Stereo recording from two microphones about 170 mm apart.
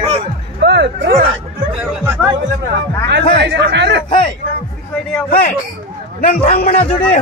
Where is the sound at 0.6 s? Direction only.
90° right.